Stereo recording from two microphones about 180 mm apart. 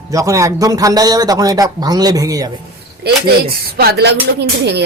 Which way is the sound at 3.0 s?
65° right (ahead or behind).